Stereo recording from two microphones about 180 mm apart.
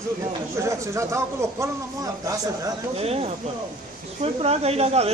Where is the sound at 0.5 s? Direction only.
15° right (ahead or behind).